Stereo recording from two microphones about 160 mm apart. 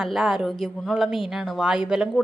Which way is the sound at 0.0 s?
Centre (ahead or behind).